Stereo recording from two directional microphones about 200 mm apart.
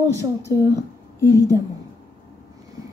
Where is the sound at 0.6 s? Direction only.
15° right (ahead or behind).